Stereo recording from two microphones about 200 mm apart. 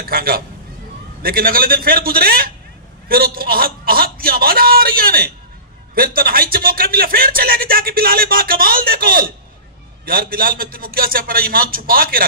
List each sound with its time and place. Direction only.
0.0 s speech: 50° right (ahead or behind)